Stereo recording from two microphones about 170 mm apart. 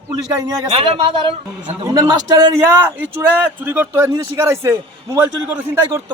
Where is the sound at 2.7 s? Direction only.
10° right (ahead or behind).